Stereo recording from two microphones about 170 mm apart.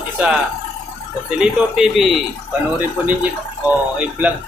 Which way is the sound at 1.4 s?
5° right (ahead or behind).